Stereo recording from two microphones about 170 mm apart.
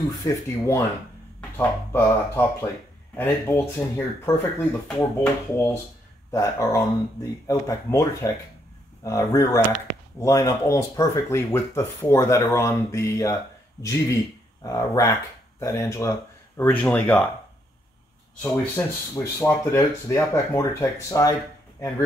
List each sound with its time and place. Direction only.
0.2 s speech: 20° left (ahead or behind)
18.4 s speech: 15° left (ahead or behind)